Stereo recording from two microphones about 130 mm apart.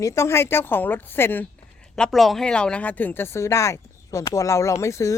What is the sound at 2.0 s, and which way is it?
Speech, centre (ahead or behind).